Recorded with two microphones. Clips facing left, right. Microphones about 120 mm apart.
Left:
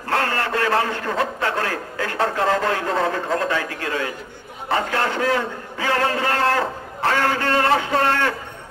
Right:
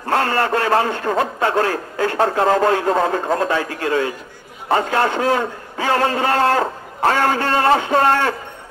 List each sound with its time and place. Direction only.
0.1 s a man's voice: 35° right (ahead or behind)
4.6 s a man's voice: 45° right (ahead or behind)